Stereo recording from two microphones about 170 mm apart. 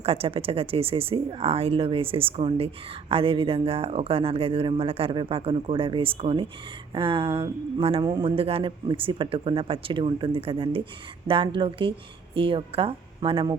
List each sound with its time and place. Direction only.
0.0 s speech: 35° right (ahead or behind)